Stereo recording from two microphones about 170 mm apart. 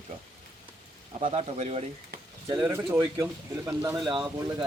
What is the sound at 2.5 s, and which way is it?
Speech, 15° right (ahead or behind).